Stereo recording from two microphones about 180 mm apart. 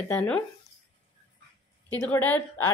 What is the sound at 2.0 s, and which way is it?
Speech, 10° left (ahead or behind).